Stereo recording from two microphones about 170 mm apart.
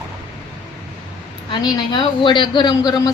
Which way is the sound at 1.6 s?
25° left (ahead or behind).